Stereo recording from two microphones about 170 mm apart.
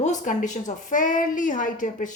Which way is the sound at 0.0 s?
45° left (ahead or behind).